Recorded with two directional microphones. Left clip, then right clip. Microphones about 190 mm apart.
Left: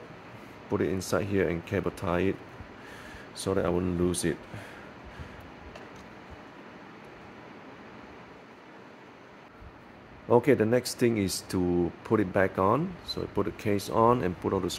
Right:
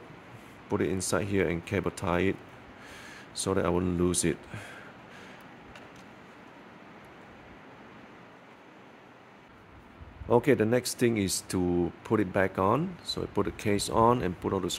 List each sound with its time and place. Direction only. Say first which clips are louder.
0.7 s speech: left 1 dB; 20° right (ahead or behind)
3.4 s speech: even; 25° right (ahead or behind)
10.2 s speech: left 1 dB; 10° right (ahead or behind)